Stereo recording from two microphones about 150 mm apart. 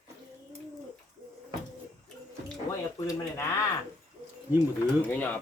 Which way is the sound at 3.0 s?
20° left (ahead or behind).